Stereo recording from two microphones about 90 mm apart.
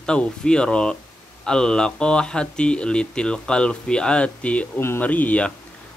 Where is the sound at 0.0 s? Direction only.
10° left (ahead or behind).